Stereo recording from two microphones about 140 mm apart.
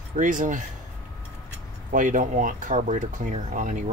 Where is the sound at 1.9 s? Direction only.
70° right (ahead or behind).